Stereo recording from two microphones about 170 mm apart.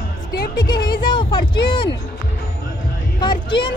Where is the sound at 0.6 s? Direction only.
25° left (ahead or behind).